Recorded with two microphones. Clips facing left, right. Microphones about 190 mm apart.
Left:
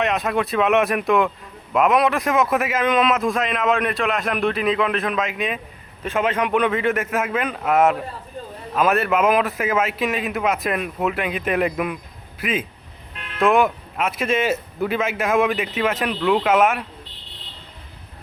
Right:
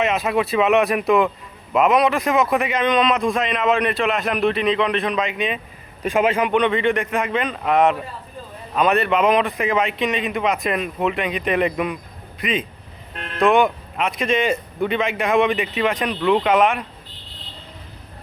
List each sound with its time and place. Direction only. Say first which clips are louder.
0.0 s a man's voice: right 1 dB; centre (ahead or behind)
6.0 s a man's voice: right 3 dB; 10° right (ahead or behind)
6.5 s a man's voice: right 1 dB; 5° left (ahead or behind)
13.1 s vehicle: right 6 dB; 45° right (ahead or behind)
13.4 s a man's voice: right 1 dB; centre (ahead or behind)